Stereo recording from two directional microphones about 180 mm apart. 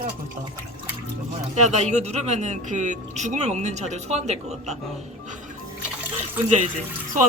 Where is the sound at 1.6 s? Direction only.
40° right (ahead or behind).